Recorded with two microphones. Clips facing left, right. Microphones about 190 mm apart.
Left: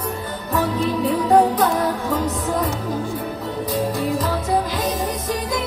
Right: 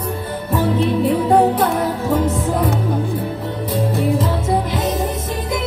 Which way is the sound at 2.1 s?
25° right (ahead or behind).